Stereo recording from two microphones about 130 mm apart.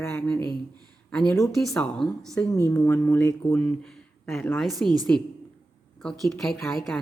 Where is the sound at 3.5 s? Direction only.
5° left (ahead or behind).